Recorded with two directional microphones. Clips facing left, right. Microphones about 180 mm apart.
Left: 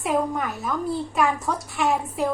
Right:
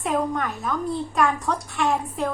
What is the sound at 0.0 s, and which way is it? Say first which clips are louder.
A woman's voice: even; 5° left (ahead or behind).